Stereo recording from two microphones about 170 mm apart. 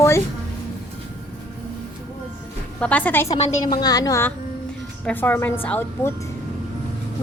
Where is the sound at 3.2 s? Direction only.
40° left (ahead or behind).